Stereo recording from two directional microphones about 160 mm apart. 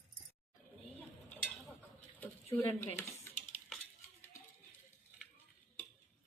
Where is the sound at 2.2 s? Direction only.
15° left (ahead or behind).